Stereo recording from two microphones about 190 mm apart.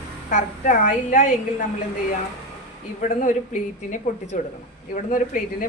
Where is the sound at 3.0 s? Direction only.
45° left (ahead or behind).